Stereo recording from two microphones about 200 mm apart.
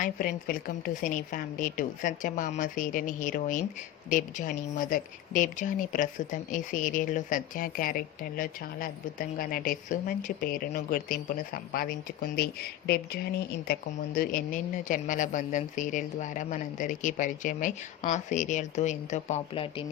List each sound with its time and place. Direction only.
0.0 s speech: 45° left (ahead or behind); by 19.8 s 25° left (ahead or behind)